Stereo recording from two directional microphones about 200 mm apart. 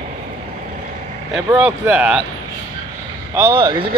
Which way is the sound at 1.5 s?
10° right (ahead or behind).